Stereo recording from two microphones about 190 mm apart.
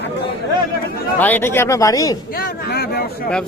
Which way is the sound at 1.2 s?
10° left (ahead or behind).